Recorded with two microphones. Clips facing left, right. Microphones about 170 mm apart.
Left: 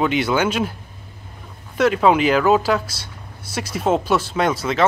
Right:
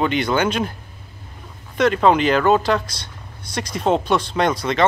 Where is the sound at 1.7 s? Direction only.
5° left (ahead or behind).